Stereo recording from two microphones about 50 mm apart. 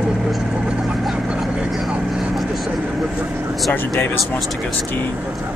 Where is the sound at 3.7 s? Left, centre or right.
Left.